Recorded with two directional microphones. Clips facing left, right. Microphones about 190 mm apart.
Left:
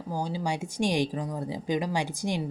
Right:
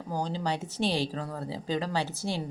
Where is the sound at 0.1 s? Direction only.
10° left (ahead or behind).